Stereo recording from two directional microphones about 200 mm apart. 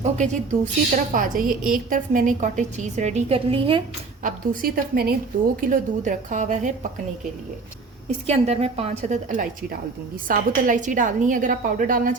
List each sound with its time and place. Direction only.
0.0 s a woman's voice: 35° right (ahead or behind)
4.2 s a woman's voice: 50° right (ahead or behind)
8.3 s a woman's voice: 30° right (ahead or behind)